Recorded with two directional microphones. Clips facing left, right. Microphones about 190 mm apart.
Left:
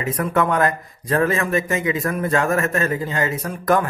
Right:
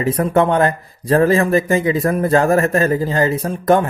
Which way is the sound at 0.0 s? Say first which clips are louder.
Right 5 dB; 30° right (ahead or behind).